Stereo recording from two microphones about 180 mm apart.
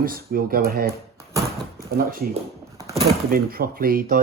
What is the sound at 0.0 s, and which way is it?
Speech, 55° right (ahead or behind).